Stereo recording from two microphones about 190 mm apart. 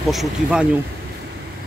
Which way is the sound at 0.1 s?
5° right (ahead or behind).